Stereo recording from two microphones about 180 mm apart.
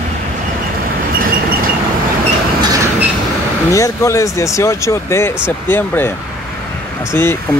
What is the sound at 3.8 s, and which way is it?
Speech, 15° left (ahead or behind).